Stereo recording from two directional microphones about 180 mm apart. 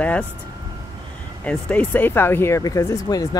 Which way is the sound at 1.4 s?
5° left (ahead or behind).